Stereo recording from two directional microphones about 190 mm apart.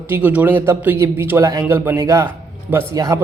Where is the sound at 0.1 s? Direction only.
10° right (ahead or behind).